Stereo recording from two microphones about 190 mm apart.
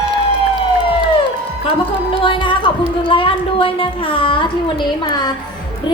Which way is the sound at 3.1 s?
30° left (ahead or behind).